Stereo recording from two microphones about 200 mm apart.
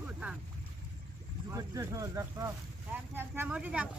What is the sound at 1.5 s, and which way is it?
Speech, 15° right (ahead or behind).